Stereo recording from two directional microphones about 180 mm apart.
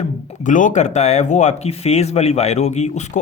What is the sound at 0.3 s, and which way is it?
Speech, 45° left (ahead or behind).